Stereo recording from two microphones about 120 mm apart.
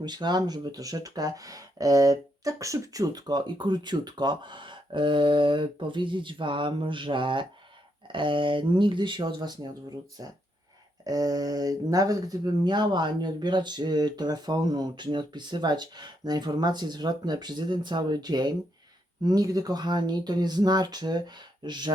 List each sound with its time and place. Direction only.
0.0 s speech: 35° right (ahead or behind)
11.0 s speech: 30° right (ahead or behind)